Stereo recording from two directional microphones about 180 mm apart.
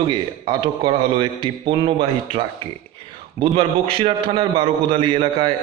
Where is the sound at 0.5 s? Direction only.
30° right (ahead or behind).